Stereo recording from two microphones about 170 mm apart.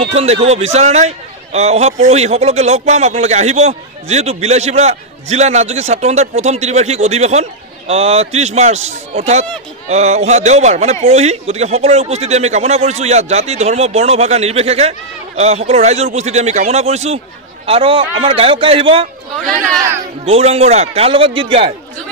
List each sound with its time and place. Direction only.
0.0 s a man's voice: 35° right (ahead or behind)
20.2 s a man's voice: 35° right (ahead or behind)